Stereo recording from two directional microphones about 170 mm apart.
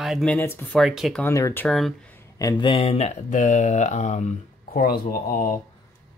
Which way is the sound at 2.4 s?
25° left (ahead or behind).